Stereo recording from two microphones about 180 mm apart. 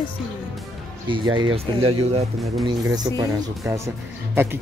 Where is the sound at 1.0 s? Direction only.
25° right (ahead or behind).